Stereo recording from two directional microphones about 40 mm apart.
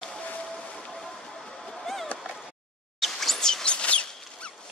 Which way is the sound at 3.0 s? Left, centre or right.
Centre.